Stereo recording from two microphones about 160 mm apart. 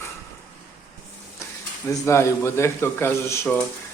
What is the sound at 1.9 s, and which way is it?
Speech, 20° left (ahead or behind).